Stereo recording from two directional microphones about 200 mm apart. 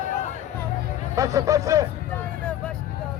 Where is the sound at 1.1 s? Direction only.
15° right (ahead or behind).